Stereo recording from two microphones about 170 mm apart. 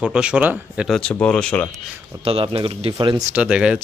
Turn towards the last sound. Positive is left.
turn(degrees=-5)  # may be behind; listen again after turning